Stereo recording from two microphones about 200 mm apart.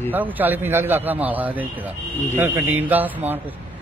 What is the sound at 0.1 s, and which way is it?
Speech, 10° right (ahead or behind).